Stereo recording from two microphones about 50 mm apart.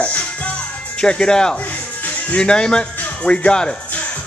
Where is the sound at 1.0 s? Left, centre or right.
Centre.